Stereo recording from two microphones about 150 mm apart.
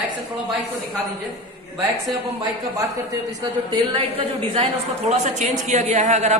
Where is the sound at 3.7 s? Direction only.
35° right (ahead or behind).